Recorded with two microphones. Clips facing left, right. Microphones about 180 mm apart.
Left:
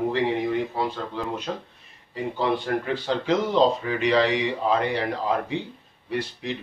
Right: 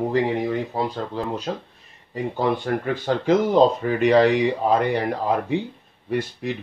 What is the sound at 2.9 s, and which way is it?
Speech, 50° right (ahead or behind).